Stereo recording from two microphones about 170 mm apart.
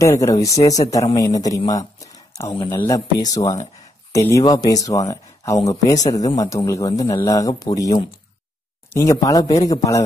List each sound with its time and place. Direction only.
0.0 s a man's voice: 20° left (ahead or behind)